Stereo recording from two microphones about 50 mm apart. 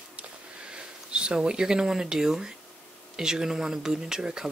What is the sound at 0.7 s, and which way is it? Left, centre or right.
Speech, centre.